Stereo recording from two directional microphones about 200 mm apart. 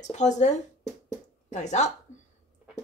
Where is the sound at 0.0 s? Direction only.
35° left (ahead or behind).